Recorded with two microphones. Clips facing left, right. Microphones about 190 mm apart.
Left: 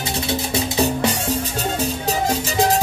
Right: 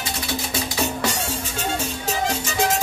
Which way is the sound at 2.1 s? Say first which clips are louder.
Left 1 dB; 35° left (ahead or behind).